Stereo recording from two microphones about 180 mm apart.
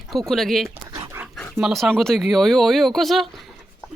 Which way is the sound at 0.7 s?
15° right (ahead or behind).